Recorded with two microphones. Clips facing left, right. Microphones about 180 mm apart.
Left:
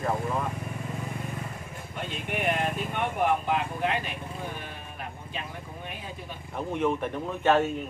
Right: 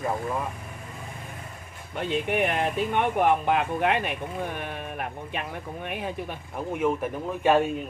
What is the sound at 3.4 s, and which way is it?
Speech, 65° right (ahead or behind).